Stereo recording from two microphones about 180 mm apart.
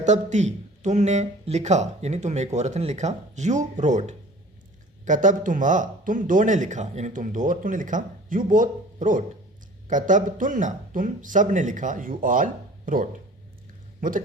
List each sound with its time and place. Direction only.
0.0 s speech: 40° right (ahead or behind)